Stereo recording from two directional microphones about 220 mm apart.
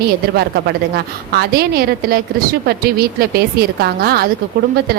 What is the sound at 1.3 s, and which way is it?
A woman's voice, 45° right (ahead or behind).